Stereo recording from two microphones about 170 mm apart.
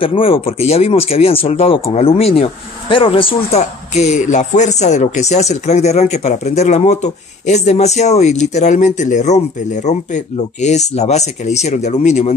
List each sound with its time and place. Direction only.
0.0 s speech: 35° left (ahead or behind)